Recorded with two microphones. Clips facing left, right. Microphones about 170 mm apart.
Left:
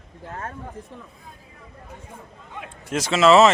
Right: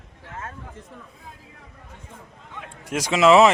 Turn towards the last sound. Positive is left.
turn(degrees=-15)  # may be behind; listen again after turning